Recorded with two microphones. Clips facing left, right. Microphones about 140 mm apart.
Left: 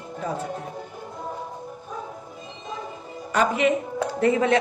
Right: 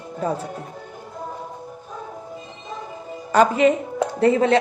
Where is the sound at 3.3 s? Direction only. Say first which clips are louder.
Right 5 dB; 35° right (ahead or behind).